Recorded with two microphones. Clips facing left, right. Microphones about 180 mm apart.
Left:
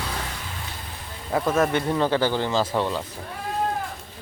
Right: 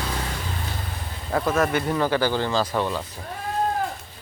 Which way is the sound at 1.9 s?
20° left (ahead or behind).